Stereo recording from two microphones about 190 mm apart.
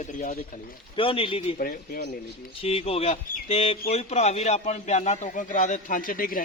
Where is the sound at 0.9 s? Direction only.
30° left (ahead or behind).